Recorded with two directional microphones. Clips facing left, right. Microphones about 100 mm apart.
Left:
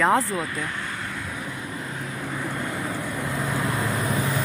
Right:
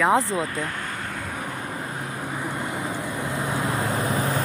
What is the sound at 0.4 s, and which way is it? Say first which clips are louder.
Speech: right 1 dB; 35° right (ahead or behind).